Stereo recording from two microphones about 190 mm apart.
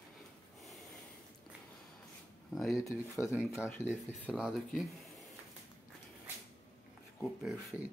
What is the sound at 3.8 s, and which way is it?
Speech, 5° right (ahead or behind).